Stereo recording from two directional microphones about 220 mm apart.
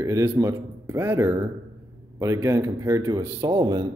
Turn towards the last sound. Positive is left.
turn(degrees=-15)  # may be behind; listen again after turning